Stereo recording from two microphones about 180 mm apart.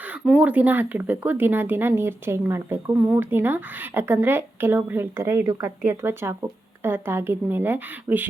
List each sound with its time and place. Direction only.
0.3 s speech: 5° right (ahead or behind)